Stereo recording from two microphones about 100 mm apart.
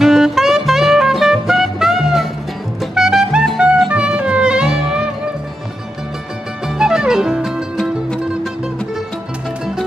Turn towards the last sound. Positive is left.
turn(degrees=-5)  # may be behind; listen again after turning